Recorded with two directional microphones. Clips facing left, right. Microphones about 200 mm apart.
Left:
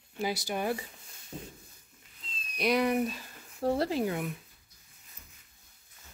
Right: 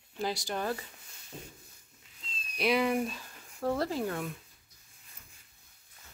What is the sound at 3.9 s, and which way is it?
Speech, 15° left (ahead or behind).